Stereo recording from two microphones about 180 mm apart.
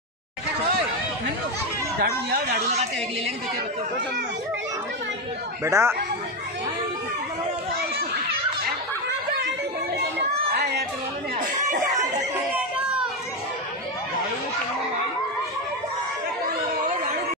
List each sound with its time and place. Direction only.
2.0 s speech: 55° right (ahead or behind)
5.6 s speech: 15° right (ahead or behind)
12.2 s children playing: 5° right (ahead or behind)